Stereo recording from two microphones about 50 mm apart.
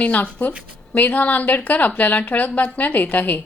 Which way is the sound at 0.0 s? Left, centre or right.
Left.